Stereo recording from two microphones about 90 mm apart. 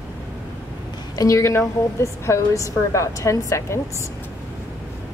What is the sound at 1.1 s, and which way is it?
A woman's voice, 35° left (ahead or behind).